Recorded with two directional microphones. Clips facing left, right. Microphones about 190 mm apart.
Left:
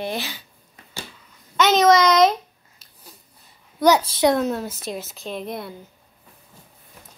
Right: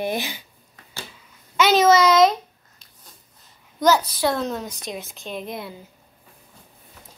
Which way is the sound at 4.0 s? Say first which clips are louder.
Left 5 dB; 25° left (ahead or behind).